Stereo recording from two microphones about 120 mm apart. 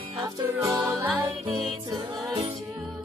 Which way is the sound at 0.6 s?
30° right (ahead or behind).